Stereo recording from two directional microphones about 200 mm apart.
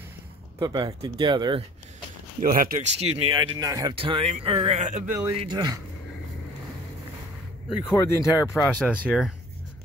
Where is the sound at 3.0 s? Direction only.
30° right (ahead or behind).